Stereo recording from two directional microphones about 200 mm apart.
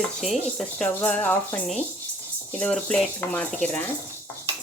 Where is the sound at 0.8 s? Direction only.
5° left (ahead or behind).